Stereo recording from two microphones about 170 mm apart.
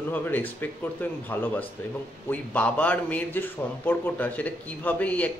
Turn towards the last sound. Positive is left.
turn(degrees=10)  # may be behind; listen again after turning